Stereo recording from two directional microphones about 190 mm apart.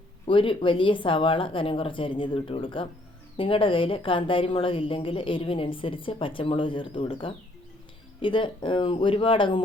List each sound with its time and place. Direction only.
0.3 s a woman's voice: 25° left (ahead or behind)